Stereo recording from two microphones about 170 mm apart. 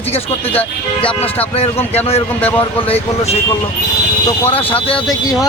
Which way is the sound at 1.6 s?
35° left (ahead or behind).